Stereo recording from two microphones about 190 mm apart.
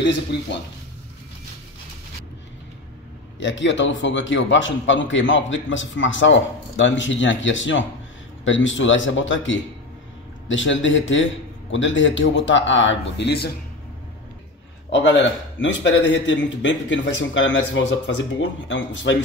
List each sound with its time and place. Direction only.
3.3 s a man's voice: 75° left (ahead or behind)
15.6 s a man's voice: 70° left (ahead or behind)